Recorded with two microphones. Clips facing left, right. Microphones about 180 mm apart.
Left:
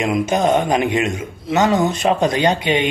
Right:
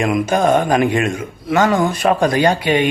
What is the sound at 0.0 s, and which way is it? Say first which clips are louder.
Speech: right 2 dB; 20° left (ahead or behind).